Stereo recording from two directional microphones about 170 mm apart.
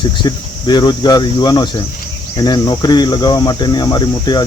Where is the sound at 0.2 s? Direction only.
25° left (ahead or behind).